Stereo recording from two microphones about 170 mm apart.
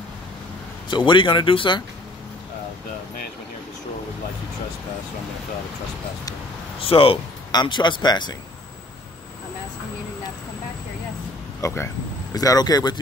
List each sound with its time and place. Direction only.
0.8 s speech: 25° left (ahead or behind)
6.8 s speech: 35° left (ahead or behind)
11.6 s speech: 15° left (ahead or behind)